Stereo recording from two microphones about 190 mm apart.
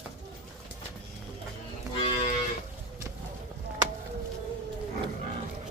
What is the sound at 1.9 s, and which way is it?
Moo, 25° left (ahead or behind).